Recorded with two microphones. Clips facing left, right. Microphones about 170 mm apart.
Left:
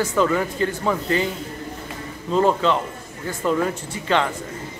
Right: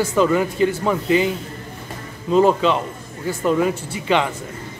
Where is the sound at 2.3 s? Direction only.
15° right (ahead or behind).